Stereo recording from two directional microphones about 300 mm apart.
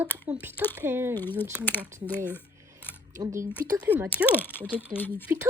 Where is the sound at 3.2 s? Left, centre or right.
Centre.